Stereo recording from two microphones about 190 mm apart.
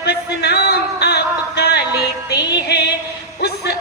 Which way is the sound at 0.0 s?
60° left (ahead or behind).